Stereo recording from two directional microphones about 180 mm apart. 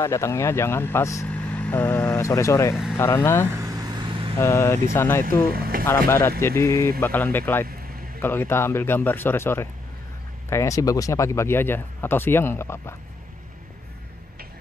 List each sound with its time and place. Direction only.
0.0 s speech: 15° left (ahead or behind)
3.4 s vehicle: 20° right (ahead or behind)
4.4 s speech: 15° left (ahead or behind)
5.5 s boat: 55° right (ahead or behind)
6.0 s speech: 15° left (ahead or behind)